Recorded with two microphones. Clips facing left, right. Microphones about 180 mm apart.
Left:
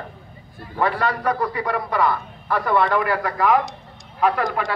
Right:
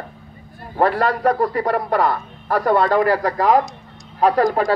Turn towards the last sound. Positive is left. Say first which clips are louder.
# right 6 dB
turn(degrees=-35)  # may be behind; listen again after turning